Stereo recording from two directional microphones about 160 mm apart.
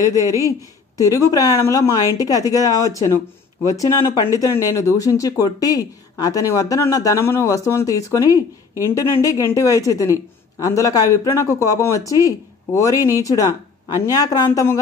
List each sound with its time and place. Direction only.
0.9 s speech: 20° left (ahead or behind)